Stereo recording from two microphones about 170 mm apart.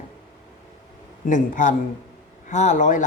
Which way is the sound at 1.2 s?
50° left (ahead or behind).